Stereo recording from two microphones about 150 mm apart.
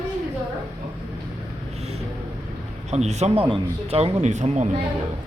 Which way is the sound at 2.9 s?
50° right (ahead or behind).